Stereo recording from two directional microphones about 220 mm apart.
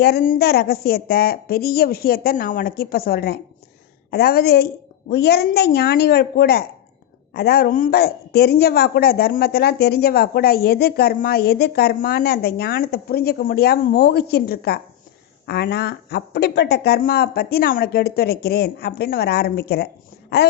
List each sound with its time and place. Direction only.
0.0 s a woman's voice: 45° left (ahead or behind)